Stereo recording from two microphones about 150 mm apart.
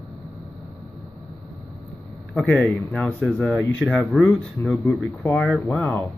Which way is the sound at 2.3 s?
5° left (ahead or behind).